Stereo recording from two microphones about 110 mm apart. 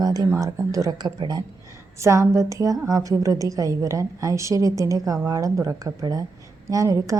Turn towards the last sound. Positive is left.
turn(degrees=-30)  # may be behind; listen again after turning